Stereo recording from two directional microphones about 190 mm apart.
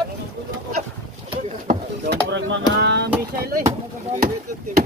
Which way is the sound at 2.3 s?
60° right (ahead or behind).